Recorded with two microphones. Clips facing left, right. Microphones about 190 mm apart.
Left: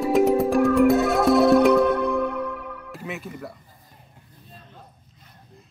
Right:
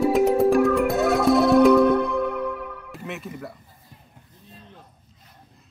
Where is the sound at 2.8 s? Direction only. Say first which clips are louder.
Even; centre (ahead or behind).